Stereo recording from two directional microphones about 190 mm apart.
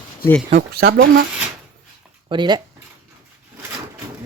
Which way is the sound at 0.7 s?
55° right (ahead or behind).